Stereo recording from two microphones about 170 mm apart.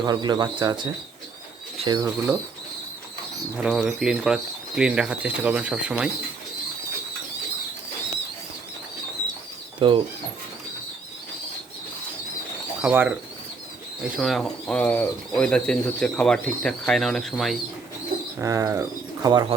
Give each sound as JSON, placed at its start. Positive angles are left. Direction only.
{"t": 0.0, "sound": "speech", "side_deg": -25}
{"t": 2.0, "sound": "speech", "side_deg": -15}
{"t": 3.6, "sound": "speech", "side_deg": 0}
{"t": 9.7, "sound": "speech", "side_deg": -30}
{"t": 12.8, "sound": "speech", "side_deg": -10}
{"t": 14.2, "sound": "speech", "side_deg": 0}
{"t": 18.3, "sound": "speech", "side_deg": -20}